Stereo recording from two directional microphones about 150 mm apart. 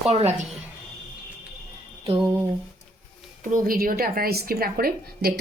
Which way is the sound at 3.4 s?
70° right (ahead or behind).